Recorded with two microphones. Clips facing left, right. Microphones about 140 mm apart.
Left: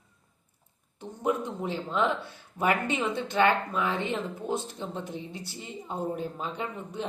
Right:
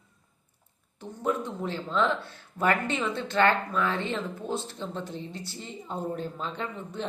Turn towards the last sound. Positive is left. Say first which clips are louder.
# even
turn(degrees=15)  # may be behind; listen again after turning